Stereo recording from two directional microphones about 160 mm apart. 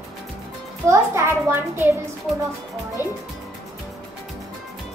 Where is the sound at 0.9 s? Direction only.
15° right (ahead or behind).